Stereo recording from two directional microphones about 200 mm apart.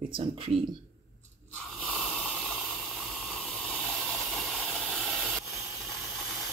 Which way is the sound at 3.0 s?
Centre (ahead or behind).